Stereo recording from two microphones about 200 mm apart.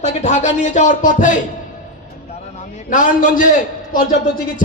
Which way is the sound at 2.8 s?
40° left (ahead or behind).